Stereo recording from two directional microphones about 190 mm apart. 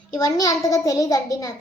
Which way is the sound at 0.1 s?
20° left (ahead or behind).